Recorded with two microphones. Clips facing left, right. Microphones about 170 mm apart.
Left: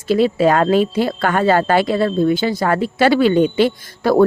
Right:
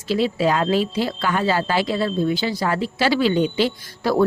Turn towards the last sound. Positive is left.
turn(degrees=50)  # may be behind; listen again after turning